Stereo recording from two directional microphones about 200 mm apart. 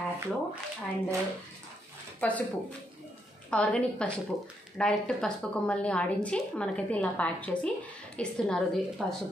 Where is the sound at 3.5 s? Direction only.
5° left (ahead or behind).